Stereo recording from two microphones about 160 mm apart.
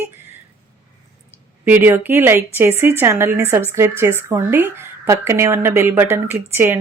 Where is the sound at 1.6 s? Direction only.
15° right (ahead or behind).